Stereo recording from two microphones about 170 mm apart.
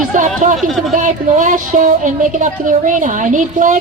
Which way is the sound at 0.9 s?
50° right (ahead or behind).